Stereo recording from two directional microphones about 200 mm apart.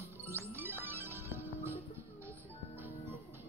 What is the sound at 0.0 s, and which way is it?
Music, 10° right (ahead or behind).